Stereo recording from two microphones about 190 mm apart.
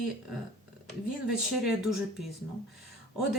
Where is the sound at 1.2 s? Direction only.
Centre (ahead or behind).